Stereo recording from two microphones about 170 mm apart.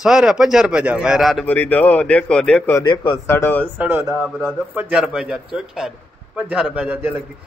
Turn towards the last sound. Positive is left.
turn(degrees=-5)  # may be behind; listen again after turning